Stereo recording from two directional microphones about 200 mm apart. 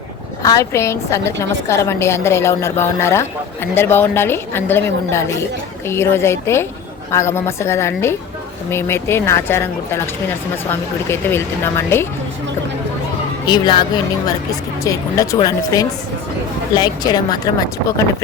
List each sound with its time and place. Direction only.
0.4 s a woman's voice: 15° left (ahead or behind)
13.5 s a woman's voice: 20° left (ahead or behind)